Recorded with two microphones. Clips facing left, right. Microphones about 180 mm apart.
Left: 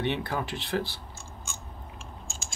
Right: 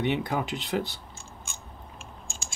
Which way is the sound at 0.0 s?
15° right (ahead or behind).